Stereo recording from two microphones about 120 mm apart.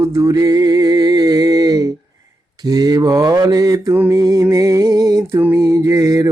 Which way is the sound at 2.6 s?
35° right (ahead or behind).